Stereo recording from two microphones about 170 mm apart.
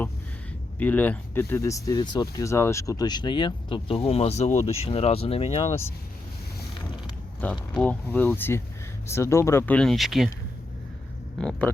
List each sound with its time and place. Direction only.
0.8 s speech: 10° left (ahead or behind); by 5.7 s 35° left (ahead or behind)
7.7 s speech: 10° left (ahead or behind)
11.3 s speech: 5° left (ahead or behind)